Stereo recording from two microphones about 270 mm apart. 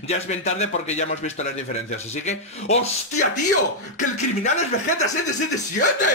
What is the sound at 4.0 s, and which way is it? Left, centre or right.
Speech, left.